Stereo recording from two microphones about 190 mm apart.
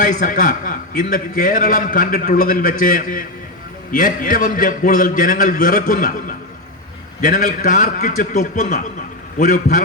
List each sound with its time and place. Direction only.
0.0 s a man's voice: 45° left (ahead or behind)